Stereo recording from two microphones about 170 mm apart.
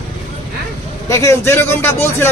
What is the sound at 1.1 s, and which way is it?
Speech, 15° left (ahead or behind).